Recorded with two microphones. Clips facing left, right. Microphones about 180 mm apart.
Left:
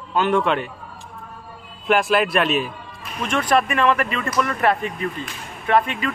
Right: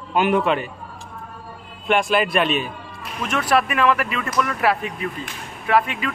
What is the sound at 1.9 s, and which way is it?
Speech, centre (ahead or behind).